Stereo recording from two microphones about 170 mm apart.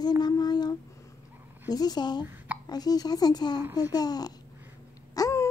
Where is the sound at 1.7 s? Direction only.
25° left (ahead or behind).